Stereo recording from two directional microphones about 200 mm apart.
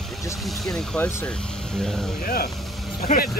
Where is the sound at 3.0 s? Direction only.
45° left (ahead or behind).